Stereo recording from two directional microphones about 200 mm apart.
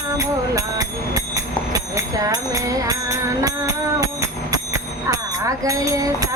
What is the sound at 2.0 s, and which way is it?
Music, 15° right (ahead or behind).